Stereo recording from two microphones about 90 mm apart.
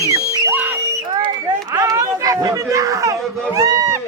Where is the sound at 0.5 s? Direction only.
20° right (ahead or behind).